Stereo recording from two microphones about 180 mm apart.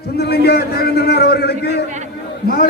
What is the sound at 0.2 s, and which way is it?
A man's voice, 65° left (ahead or behind).